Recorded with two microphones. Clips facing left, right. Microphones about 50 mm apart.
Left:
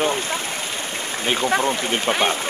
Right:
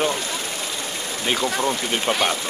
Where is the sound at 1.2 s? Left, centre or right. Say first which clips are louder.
Left 2 dB; centre.